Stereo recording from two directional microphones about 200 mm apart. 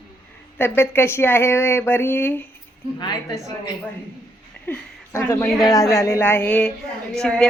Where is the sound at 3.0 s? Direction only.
20° left (ahead or behind).